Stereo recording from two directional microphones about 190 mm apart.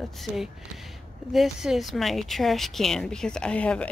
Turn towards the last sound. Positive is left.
turn(degrees=5)  # may be behind; listen again after turning